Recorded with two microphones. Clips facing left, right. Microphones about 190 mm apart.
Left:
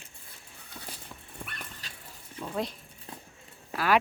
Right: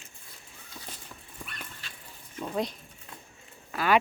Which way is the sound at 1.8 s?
40° left (ahead or behind).